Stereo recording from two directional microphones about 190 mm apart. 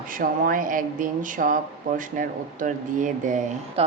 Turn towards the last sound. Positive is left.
turn(degrees=-40)  # may be behind; listen again after turning